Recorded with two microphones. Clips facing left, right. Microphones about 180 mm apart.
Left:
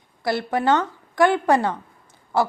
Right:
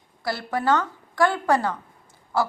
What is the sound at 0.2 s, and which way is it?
A woman's voice, 20° left (ahead or behind).